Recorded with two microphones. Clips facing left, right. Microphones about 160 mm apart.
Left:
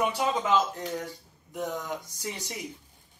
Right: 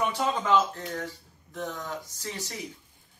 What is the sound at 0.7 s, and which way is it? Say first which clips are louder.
A man's voice: left 1 dB; 15° left (ahead or behind).